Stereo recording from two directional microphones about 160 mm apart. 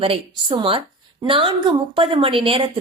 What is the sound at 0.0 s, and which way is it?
A woman's voice, 35° right (ahead or behind).